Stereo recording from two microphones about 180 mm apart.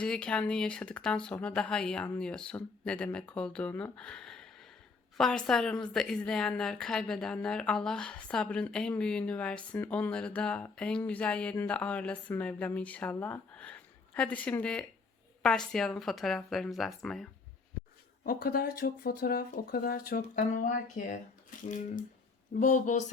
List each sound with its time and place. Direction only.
0.0 s a woman's voice: 5° left (ahead or behind)
18.2 s speech: 55° left (ahead or behind)
22.6 s speech: 45° left (ahead or behind)